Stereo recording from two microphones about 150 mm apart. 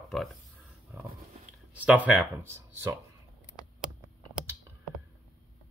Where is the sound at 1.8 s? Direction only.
10° right (ahead or behind).